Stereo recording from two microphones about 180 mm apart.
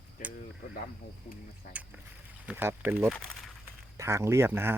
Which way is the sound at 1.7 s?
55° left (ahead or behind).